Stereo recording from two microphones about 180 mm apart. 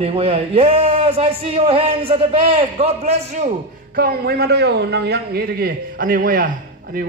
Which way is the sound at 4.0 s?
60° right (ahead or behind).